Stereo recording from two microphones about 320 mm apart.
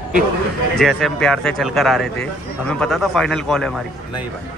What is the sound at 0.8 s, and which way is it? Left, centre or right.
Speech, centre.